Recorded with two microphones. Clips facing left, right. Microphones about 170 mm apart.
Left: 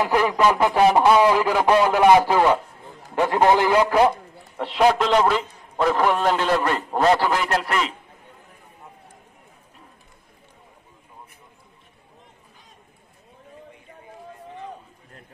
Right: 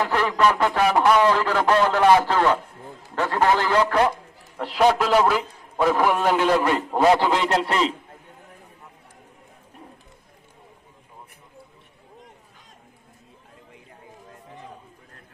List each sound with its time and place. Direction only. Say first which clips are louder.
0.0 s a man's voice: left 2 dB; 15° left (ahead or behind)
0.8 s a man's voice: left 3 dB; 25° left (ahead or behind)
1.1 s a man's voice: left 2 dB; 10° left (ahead or behind)
4.6 s a man's voice: left 1 dB; centre (ahead or behind)
7.2 s a man's voice: right 1 dB; 20° right (ahead or behind)